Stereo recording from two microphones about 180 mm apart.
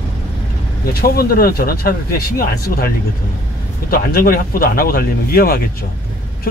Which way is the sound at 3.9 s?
55° left (ahead or behind).